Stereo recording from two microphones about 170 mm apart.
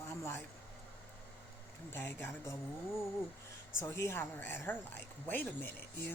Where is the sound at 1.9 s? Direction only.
10° left (ahead or behind).